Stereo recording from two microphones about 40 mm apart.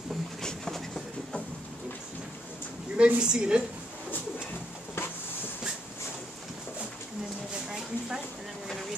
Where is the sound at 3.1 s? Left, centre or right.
Right.